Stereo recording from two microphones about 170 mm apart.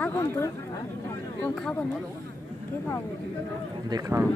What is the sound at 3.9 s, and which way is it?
Speech, 15° right (ahead or behind).